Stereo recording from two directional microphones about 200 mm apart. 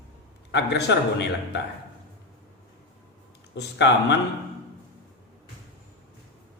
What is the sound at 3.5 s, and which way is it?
Speech, 60° left (ahead or behind).